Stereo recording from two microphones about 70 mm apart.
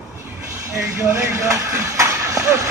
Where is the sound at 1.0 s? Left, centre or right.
Right.